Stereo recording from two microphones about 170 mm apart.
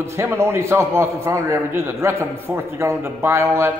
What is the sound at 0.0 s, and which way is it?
A man's voice, 15° right (ahead or behind).